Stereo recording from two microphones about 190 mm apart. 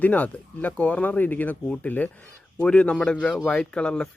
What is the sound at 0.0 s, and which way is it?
Speech, 10° left (ahead or behind).